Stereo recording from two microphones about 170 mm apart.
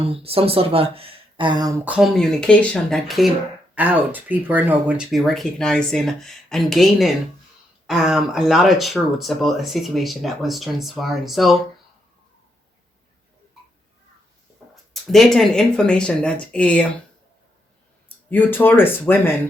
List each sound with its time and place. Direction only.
0.0 s speech: 35° right (ahead or behind)
1.8 s speech: 5° right (ahead or behind)
15.0 s speech: centre (ahead or behind)
18.3 s speech: 10° left (ahead or behind)